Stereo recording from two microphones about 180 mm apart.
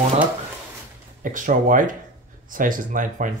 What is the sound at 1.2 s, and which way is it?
Speech, 45° right (ahead or behind).